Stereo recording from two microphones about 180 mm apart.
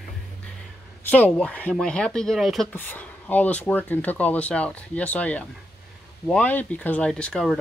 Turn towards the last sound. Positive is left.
turn(degrees=0)  # may be behind; listen again after turning